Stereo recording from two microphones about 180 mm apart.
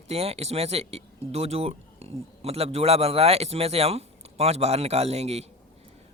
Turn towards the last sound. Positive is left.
turn(degrees=-35)  # may be behind; listen again after turning